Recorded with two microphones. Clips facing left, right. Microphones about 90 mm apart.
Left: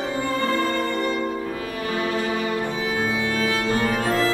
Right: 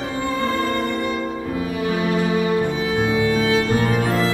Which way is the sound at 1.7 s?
15° right (ahead or behind).